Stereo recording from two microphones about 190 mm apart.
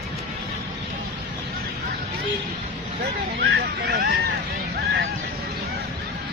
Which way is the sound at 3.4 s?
60° right (ahead or behind).